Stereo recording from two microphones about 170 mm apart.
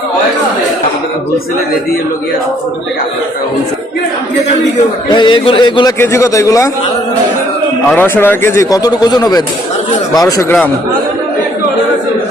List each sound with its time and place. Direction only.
5.0 s a man's voice: 25° left (ahead or behind)
6.0 s a man's voice: 15° left (ahead or behind)
7.9 s a man's voice: 10° left (ahead or behind)